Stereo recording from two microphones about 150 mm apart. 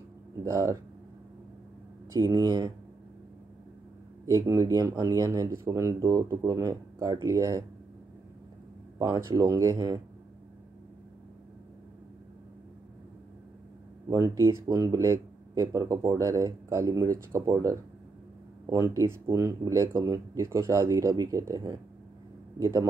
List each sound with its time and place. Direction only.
0.4 s speech: 20° right (ahead or behind)
2.1 s speech: 25° right (ahead or behind)
4.3 s speech: 20° right (ahead or behind)
8.9 s speech: 25° right (ahead or behind)
14.0 s speech: 20° right (ahead or behind)